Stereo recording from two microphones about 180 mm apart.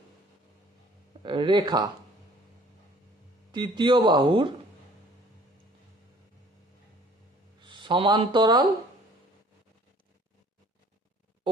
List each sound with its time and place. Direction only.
1.2 s speech: 25° right (ahead or behind)
3.5 s speech: 25° right (ahead or behind)
7.6 s speech: 25° right (ahead or behind)